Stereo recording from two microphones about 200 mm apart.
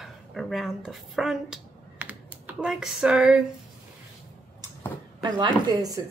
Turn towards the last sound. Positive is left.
turn(degrees=-20)  # may be behind; listen again after turning